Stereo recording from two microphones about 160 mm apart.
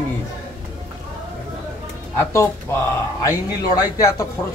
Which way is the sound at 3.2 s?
25° left (ahead or behind).